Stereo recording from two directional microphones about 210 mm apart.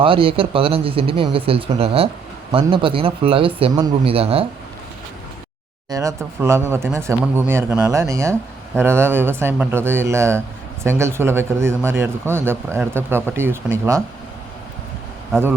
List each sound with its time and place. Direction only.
0.0 s speech: 25° right (ahead or behind)
5.9 s speech: 15° right (ahead or behind)